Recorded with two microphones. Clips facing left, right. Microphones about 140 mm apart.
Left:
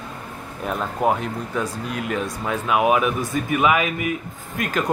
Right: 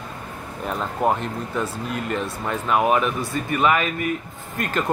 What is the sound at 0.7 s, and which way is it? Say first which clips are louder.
Speech: left 1 dB; 5° left (ahead or behind).